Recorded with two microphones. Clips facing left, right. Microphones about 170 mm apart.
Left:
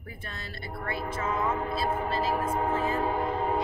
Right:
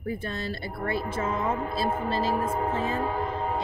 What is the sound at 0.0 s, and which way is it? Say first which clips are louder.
A woman's voice: right 11 dB; 30° right (ahead or behind).